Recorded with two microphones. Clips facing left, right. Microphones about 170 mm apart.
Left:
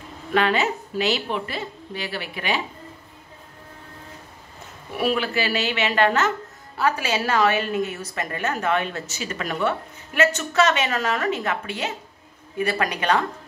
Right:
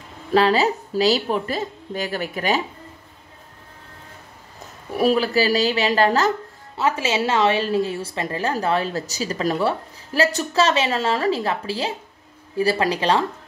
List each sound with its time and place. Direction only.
0.3 s a woman's voice: 35° right (ahead or behind)
4.9 s a woman's voice: 40° right (ahead or behind)
6.8 s a woman's voice: 25° right (ahead or behind)